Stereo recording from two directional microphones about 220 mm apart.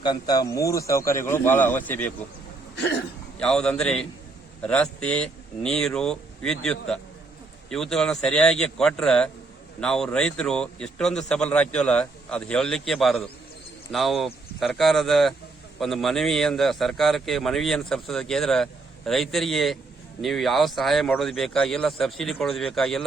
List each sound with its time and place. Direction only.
0.0 s speech: 15° left (ahead or behind)
2.7 s cough: 50° left (ahead or behind)
3.3 s a man's voice: 5° left (ahead or behind)